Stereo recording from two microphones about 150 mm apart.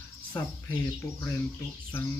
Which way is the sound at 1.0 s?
15° left (ahead or behind).